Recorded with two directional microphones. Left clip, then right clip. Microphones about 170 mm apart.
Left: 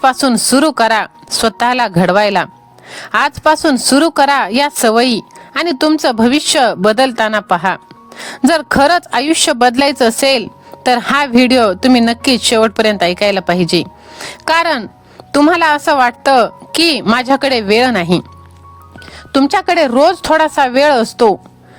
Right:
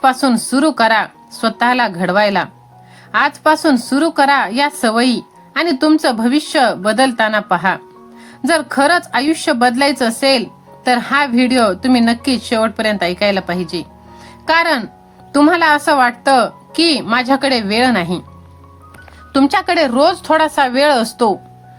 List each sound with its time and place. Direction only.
0.0 s a woman's voice: 60° left (ahead or behind)
19.3 s speech: 45° left (ahead or behind)